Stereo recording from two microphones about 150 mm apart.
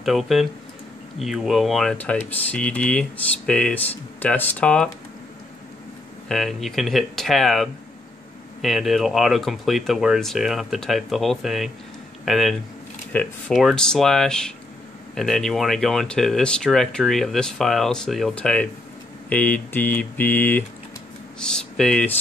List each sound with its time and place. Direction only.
0.0 s speech: centre (ahead or behind)
6.2 s speech: 5° left (ahead or behind)